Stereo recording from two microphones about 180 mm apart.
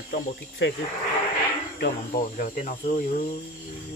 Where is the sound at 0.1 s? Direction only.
75° left (ahead or behind).